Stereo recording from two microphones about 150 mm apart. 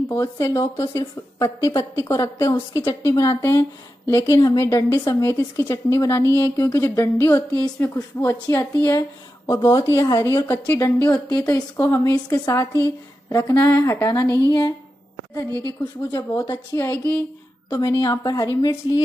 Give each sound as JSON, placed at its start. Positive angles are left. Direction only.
{"t": 0.1, "sound": "a woman's voice", "side_deg": 20}
{"t": 11.3, "sound": "a woman's voice", "side_deg": 25}
{"t": 15.6, "sound": "a woman's voice", "side_deg": 20}